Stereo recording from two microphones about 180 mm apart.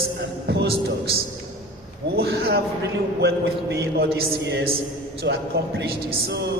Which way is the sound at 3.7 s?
65° right (ahead or behind).